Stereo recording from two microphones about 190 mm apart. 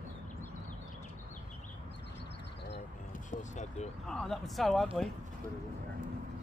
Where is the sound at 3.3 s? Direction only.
40° left (ahead or behind).